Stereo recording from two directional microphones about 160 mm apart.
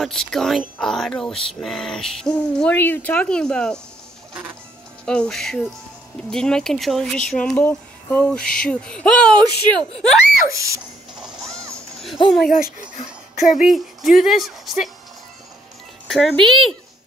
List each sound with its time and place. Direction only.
0.0 s speech: centre (ahead or behind)
5.0 s speech: 5° left (ahead or behind)
11.1 s music: centre (ahead or behind)
12.0 s speech: centre (ahead or behind)
12.9 s a sound: 55° left (ahead or behind)
13.6 s speech: centre (ahead or behind)
16.1 s speech: centre (ahead or behind)